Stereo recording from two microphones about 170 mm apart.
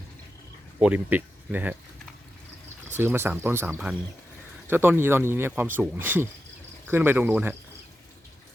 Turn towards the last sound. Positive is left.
turn(degrees=-10)  # may be behind; listen again after turning